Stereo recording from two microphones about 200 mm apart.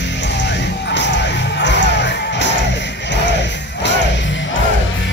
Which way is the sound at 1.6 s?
60° left (ahead or behind).